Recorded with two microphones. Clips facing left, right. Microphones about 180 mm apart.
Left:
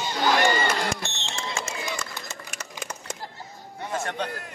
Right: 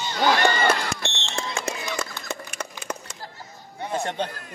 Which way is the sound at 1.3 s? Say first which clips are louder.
Right 3 dB; 55° right (ahead or behind).